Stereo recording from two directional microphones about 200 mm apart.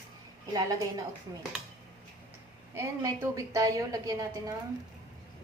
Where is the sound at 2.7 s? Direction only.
15° right (ahead or behind).